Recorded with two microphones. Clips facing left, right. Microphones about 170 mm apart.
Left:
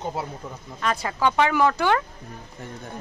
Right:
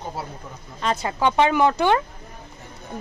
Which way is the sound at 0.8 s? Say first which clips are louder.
Right 1 dB; 25° right (ahead or behind).